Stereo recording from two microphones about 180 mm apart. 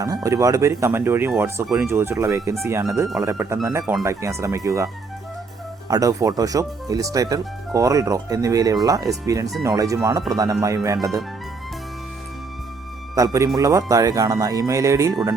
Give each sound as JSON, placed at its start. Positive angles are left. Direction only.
{"t": 0.0, "sound": "speech", "side_deg": -20}
{"t": 5.9, "sound": "speech", "side_deg": -20}
{"t": 13.1, "sound": "speech", "side_deg": -20}